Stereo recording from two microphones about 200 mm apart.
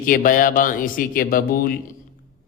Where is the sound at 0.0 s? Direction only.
45° left (ahead or behind).